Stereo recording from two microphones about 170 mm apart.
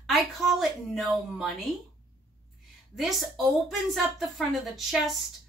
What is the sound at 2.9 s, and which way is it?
A woman's voice, centre (ahead or behind).